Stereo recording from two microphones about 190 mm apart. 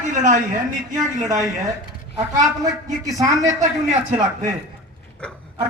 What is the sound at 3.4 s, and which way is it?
Speech, 15° right (ahead or behind).